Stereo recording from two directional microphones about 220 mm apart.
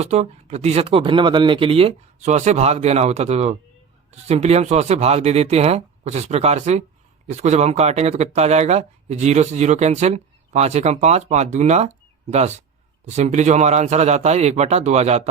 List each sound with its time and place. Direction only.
0.0 s speech: 30° right (ahead or behind)